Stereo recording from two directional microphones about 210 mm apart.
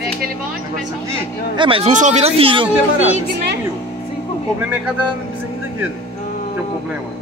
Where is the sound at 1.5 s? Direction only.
25° right (ahead or behind).